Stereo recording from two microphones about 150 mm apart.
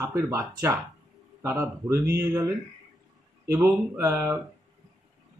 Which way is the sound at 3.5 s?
20° right (ahead or behind).